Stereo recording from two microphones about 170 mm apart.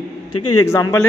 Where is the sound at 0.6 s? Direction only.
20° left (ahead or behind).